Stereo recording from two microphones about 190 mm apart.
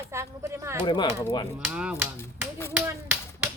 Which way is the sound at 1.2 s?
15° left (ahead or behind).